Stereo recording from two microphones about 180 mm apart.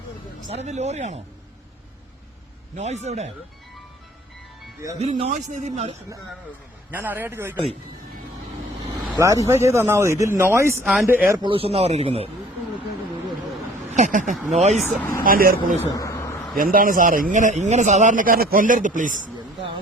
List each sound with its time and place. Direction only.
0.4 s speech: 35° right (ahead or behind)
2.7 s speech: 40° right (ahead or behind)
4.9 s speech: 35° right (ahead or behind)
6.9 s speech: 10° right (ahead or behind)
9.1 s speech: 15° right (ahead or behind)
11.4 s speech: 30° right (ahead or behind)
13.9 s speech: 45° right (ahead or behind)
15.2 s a man's voice: 55° right (ahead or behind)
15.8 s a sound: 15° left (ahead or behind)
16.7 s a man's voice: 50° right (ahead or behind)